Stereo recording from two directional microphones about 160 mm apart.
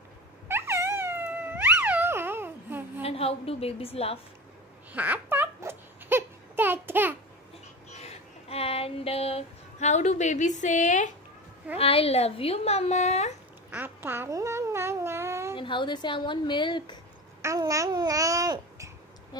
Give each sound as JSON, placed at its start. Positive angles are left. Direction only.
{"t": 0.5, "sound": "wail", "side_deg": -15}
{"t": 3.0, "sound": "a woman's voice", "side_deg": 40}
{"t": 4.9, "sound": "a sound", "side_deg": -10}
{"t": 7.9, "sound": "a sound", "side_deg": 40}
{"t": 10.6, "sound": "speech", "side_deg": 50}
{"t": 11.8, "sound": "speech", "side_deg": 35}
{"t": 13.7, "sound": "babbling", "side_deg": -10}
{"t": 15.5, "sound": "a woman's voice", "side_deg": 30}
{"t": 17.4, "sound": "babbling", "side_deg": -20}